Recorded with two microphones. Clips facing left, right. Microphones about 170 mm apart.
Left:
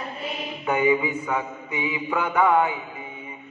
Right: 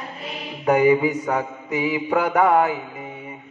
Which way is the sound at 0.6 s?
40° right (ahead or behind).